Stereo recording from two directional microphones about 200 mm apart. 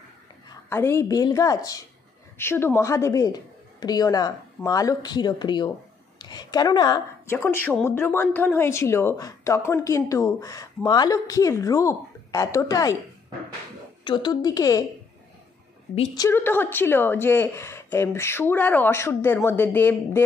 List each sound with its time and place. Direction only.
0.7 s a woman's voice: 10° left (ahead or behind)
14.0 s speech: 25° left (ahead or behind)
16.2 s a woman's voice: 10° left (ahead or behind)